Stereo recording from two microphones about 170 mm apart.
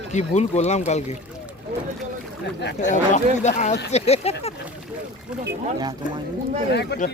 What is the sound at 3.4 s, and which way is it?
Speech, 45° left (ahead or behind).